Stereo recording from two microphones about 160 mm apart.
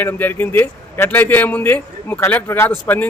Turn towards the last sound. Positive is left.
turn(degrees=15)  # may be behind; listen again after turning